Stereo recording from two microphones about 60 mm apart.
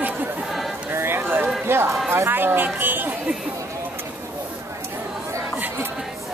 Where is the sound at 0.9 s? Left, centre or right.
Right.